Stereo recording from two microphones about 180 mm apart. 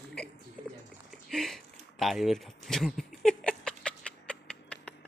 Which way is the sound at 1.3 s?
Centre (ahead or behind).